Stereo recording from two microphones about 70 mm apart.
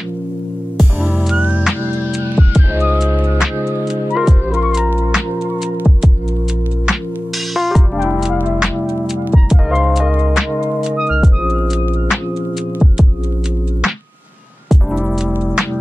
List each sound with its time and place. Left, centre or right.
2.7 s music: right
3.3 s music: centre
7.5 s music: centre
9.8 s music: centre
14.7 s music: centre